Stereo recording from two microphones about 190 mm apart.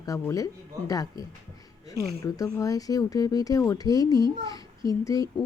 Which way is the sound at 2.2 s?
15° left (ahead or behind).